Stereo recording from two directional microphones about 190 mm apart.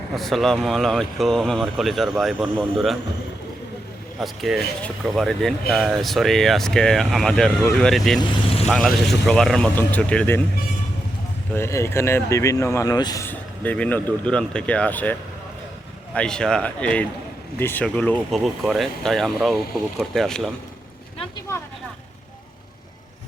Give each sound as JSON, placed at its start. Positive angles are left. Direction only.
{"t": 0.1, "sound": "speech", "side_deg": 0}
{"t": 4.2, "sound": "speech", "side_deg": 0}
{"t": 11.5, "sound": "speech", "side_deg": 15}
{"t": 16.1, "sound": "speech", "side_deg": 5}